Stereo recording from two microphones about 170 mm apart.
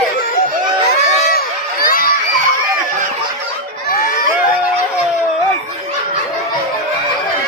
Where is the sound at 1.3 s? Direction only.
60° left (ahead or behind).